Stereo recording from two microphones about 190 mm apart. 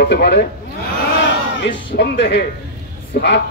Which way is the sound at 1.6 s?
65° left (ahead or behind).